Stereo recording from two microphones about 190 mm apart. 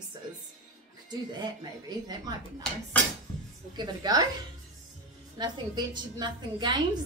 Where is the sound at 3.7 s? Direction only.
20° right (ahead or behind).